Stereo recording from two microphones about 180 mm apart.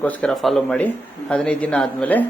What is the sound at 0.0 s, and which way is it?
Speech, 5° left (ahead or behind).